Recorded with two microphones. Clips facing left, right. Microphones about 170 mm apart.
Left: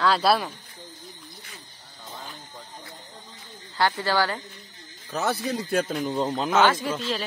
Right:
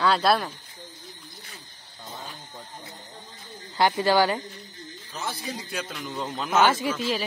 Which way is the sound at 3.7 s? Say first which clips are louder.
Right 3 dB; 15° right (ahead or behind).